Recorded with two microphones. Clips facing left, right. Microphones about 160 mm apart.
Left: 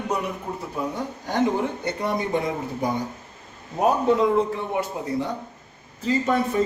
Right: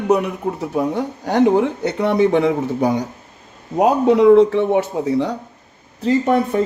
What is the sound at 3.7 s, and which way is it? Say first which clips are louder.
Speech: right 6 dB; 85° right.